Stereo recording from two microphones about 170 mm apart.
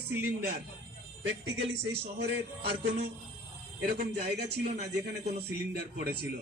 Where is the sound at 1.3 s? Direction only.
90° right; by 6.2 s 70° right (ahead or behind).